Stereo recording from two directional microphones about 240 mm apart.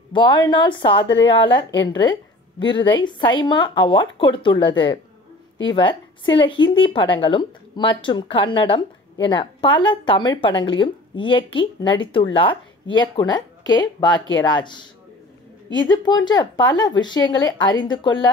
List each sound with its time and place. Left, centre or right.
0.1 s speech: centre
15.9 s speech: centre